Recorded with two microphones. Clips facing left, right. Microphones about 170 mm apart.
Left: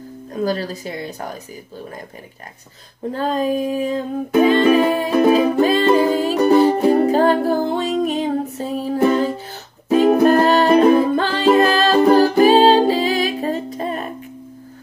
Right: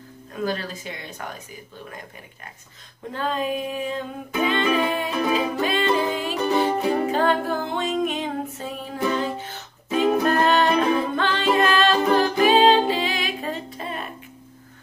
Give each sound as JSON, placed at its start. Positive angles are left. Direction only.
{"t": 0.3, "sound": "music", "side_deg": 35}
{"t": 3.1, "sound": "music", "side_deg": 40}